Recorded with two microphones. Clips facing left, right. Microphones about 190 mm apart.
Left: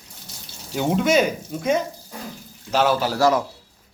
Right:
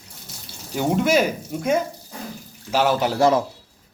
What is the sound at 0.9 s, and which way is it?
A man's voice, 10° right (ahead or behind).